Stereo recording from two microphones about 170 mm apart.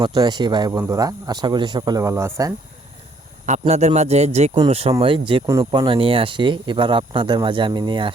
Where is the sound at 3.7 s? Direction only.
40° right (ahead or behind).